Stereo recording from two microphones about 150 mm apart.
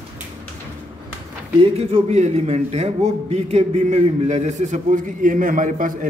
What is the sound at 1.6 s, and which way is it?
A man's voice, 40° right (ahead or behind).